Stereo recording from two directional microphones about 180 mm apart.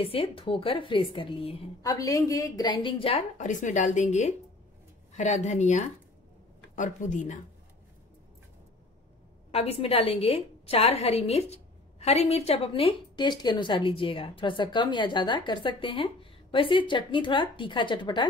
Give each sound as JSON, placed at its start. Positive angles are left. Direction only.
{"t": 0.0, "sound": "a woman's voice", "side_deg": 30}
{"t": 1.8, "sound": "a woman's voice", "side_deg": 20}
{"t": 9.5, "sound": "a woman's voice", "side_deg": 35}